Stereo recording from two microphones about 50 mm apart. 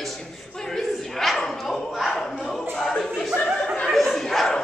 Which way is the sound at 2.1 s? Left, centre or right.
Centre.